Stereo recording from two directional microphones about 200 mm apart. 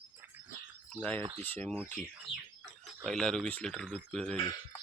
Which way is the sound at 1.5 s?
10° left (ahead or behind).